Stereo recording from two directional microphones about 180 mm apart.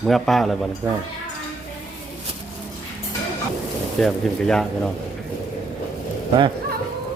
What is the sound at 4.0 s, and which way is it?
Speech, 5° left (ahead or behind).